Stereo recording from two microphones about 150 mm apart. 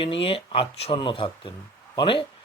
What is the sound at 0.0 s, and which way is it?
Speech, 40° left (ahead or behind).